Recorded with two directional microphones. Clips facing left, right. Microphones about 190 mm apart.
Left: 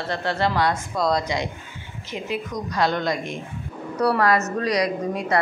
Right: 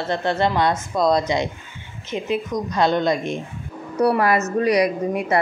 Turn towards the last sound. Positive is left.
turn(degrees=-25)  # may be behind; listen again after turning